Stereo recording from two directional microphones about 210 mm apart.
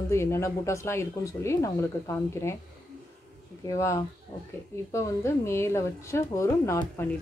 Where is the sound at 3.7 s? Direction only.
15° left (ahead or behind).